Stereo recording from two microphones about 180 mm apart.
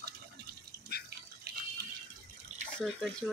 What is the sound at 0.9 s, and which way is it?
Water, 60° left (ahead or behind).